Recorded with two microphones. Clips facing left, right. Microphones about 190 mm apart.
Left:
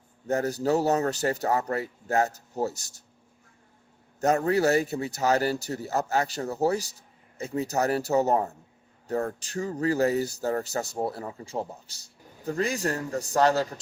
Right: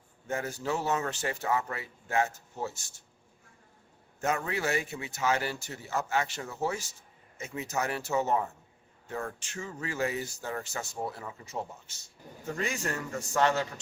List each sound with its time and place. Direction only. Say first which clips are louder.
0.3 s speech: left 8 dB; 40° left (ahead or behind)
4.2 s speech: left 8 dB; 40° left (ahead or behind)